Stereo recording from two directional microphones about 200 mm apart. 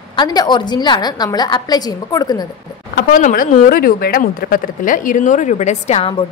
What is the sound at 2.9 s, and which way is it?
A woman's voice, 45° left (ahead or behind).